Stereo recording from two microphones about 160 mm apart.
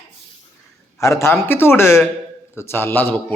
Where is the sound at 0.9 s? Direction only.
20° left (ahead or behind).